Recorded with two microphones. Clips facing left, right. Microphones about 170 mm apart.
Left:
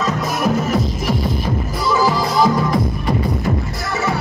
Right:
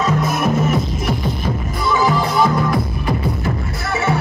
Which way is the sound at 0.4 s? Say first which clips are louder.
Even; centre (ahead or behind).